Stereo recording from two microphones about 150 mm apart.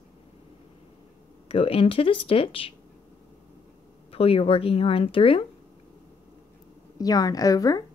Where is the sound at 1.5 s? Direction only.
40° left (ahead or behind).